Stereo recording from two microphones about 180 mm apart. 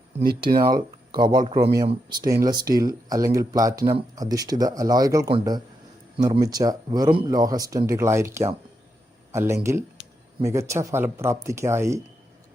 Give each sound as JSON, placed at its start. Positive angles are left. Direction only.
{"t": 0.2, "sound": "speech", "side_deg": -60}
{"t": 0.4, "sound": "speech", "side_deg": -25}